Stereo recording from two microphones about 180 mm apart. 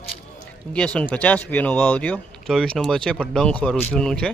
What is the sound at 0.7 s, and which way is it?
Speech, 5° left (ahead or behind).